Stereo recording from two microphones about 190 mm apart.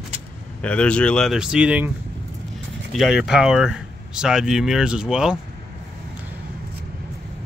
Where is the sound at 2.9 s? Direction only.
Centre (ahead or behind).